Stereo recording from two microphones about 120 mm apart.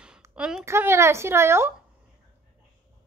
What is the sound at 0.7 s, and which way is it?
A woman's voice, 20° right (ahead or behind).